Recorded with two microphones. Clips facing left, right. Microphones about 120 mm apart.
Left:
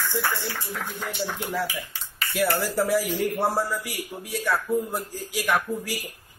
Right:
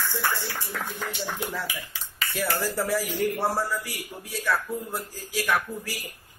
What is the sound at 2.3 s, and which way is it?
A man's voice, 15° left (ahead or behind).